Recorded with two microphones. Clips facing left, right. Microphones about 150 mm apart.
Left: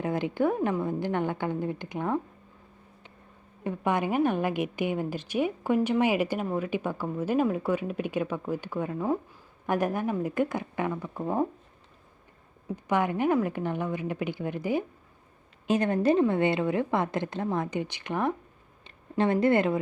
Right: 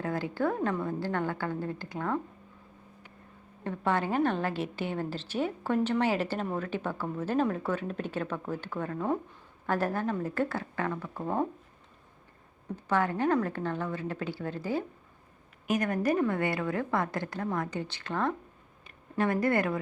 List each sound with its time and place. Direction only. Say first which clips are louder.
0.0 s a woman's voice: left 4 dB; 20° left (ahead or behind)
3.6 s a woman's voice: left 2 dB; 15° left (ahead or behind)
12.7 s a woman's voice: left 2 dB; 15° left (ahead or behind)
15.6 s a woman's voice: left 4 dB; 25° left (ahead or behind)